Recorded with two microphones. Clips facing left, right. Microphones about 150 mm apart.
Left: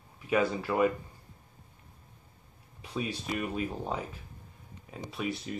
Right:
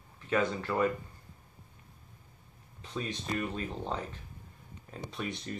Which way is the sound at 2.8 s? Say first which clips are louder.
Left 2 dB; 10° left (ahead or behind).